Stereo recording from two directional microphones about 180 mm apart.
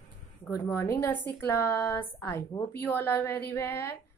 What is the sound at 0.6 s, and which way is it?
A woman's voice, 15° left (ahead or behind).